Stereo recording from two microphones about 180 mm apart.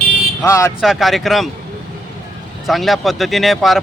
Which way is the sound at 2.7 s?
Centre (ahead or behind).